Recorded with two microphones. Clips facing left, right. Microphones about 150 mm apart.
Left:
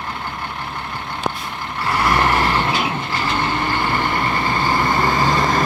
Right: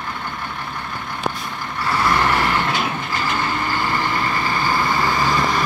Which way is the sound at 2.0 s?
20° left (ahead or behind).